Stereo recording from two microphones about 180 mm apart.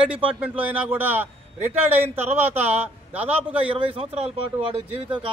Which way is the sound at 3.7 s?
30° right (ahead or behind).